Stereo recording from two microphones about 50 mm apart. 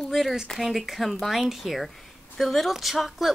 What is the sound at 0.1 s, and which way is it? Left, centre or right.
A woman's voice, centre.